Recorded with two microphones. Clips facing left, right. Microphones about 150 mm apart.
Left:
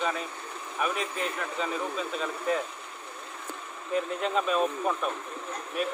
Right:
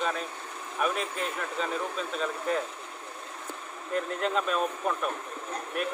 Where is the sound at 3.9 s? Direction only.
Centre (ahead or behind).